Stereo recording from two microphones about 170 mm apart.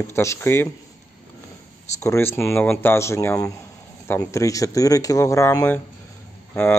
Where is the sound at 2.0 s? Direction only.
15° left (ahead or behind).